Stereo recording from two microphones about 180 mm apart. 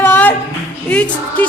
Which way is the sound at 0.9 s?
5° left (ahead or behind).